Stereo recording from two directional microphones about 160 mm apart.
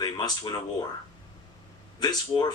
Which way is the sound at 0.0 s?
25° left (ahead or behind).